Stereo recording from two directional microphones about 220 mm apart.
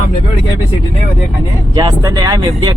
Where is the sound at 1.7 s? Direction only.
15° right (ahead or behind).